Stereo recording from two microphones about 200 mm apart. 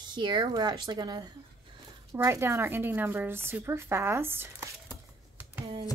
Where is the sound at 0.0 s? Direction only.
20° right (ahead or behind).